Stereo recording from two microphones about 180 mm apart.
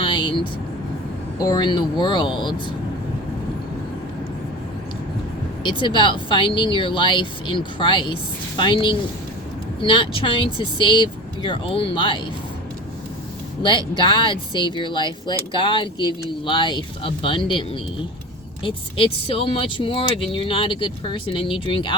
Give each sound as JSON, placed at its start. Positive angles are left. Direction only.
{"t": 0.0, "sound": "vehicle", "side_deg": 25}
{"t": 1.4, "sound": "speech", "side_deg": 20}
{"t": 5.6, "sound": "speech", "side_deg": 25}
{"t": 13.6, "sound": "speech", "side_deg": 25}